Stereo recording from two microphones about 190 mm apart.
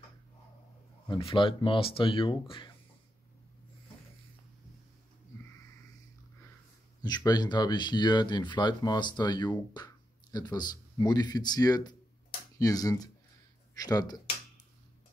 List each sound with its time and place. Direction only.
1.0 s speech: 25° left (ahead or behind)
7.0 s speech: 20° left (ahead or behind)